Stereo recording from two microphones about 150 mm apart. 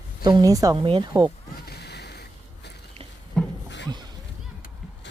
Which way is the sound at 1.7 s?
90° left.